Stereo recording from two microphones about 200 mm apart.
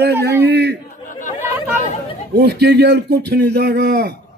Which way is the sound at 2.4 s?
55° right (ahead or behind).